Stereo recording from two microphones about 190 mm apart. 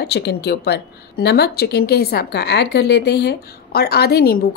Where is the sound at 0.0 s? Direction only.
60° left (ahead or behind).